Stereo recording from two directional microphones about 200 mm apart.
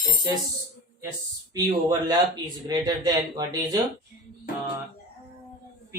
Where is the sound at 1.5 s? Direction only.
20° right (ahead or behind).